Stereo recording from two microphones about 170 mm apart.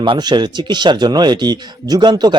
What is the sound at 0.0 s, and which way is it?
Speech, 25° right (ahead or behind).